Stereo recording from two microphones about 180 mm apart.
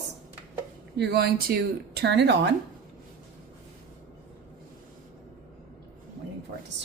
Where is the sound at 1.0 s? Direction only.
65° right (ahead or behind).